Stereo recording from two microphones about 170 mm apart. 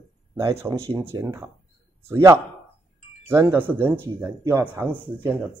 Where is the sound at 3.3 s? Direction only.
15° right (ahead or behind).